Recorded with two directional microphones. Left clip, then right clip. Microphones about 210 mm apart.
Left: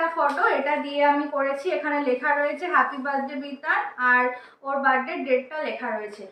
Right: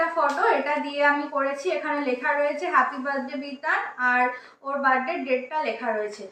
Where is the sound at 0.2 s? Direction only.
5° right (ahead or behind).